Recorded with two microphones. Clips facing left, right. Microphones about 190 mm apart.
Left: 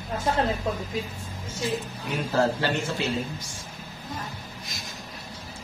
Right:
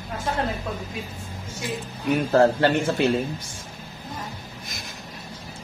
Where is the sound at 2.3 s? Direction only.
60° right (ahead or behind).